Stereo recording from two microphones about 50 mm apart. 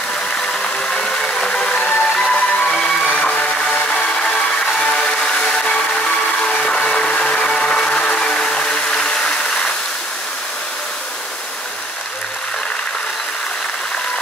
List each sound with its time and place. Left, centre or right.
0.8 s vehicle: centre
1.9 s music: left
3.9 s music: centre
6.7 s a sound: centre